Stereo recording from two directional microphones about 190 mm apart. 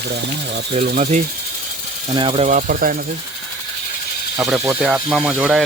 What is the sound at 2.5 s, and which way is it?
Speech, 45° right (ahead or behind).